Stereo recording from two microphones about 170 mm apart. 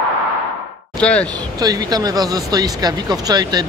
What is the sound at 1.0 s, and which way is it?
Speech, 5° left (ahead or behind).